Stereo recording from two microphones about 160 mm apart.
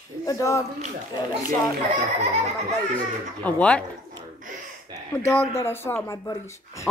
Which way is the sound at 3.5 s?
10° left (ahead or behind).